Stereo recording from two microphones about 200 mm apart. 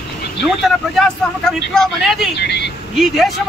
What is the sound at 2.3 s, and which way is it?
Speech, 60° left (ahead or behind).